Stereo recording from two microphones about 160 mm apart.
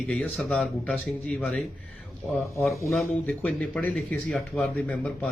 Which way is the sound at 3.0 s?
10° left (ahead or behind).